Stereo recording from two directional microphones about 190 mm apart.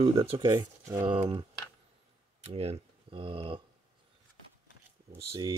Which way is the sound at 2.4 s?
35° right (ahead or behind).